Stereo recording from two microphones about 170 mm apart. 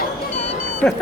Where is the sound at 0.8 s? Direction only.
5° left (ahead or behind).